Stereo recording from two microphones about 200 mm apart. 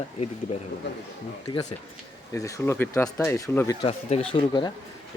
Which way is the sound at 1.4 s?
20° left (ahead or behind).